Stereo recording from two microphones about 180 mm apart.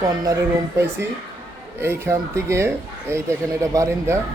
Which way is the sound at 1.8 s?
15° right (ahead or behind).